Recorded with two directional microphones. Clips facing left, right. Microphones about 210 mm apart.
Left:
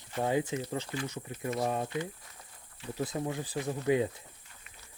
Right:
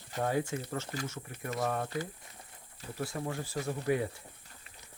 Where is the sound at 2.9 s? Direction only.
20° left (ahead or behind).